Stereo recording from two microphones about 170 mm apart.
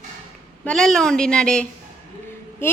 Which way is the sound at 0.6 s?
5° left (ahead or behind).